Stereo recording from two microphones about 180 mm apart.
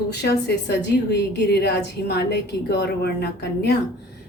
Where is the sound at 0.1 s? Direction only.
65° left (ahead or behind).